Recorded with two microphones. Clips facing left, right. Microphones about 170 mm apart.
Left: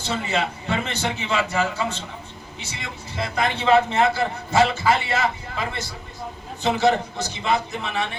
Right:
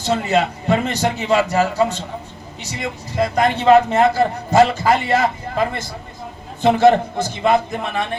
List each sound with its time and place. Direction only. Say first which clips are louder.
0.0 s a man's voice: right 7 dB; 45° right (ahead or behind)